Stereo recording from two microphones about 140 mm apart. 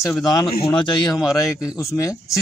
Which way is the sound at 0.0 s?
25° left (ahead or behind).